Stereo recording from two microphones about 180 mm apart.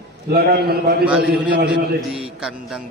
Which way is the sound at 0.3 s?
60° right (ahead or behind).